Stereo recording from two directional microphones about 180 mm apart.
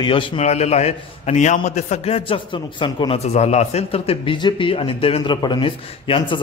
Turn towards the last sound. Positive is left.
turn(degrees=30)  # may be behind; listen again after turning